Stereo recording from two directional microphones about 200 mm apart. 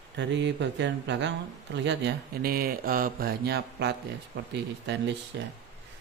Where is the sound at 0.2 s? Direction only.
60° right (ahead or behind).